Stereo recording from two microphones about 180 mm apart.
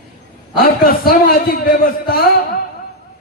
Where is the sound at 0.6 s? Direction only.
55° left (ahead or behind).